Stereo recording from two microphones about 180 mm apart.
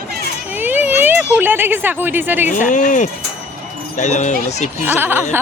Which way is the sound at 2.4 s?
45° left (ahead or behind).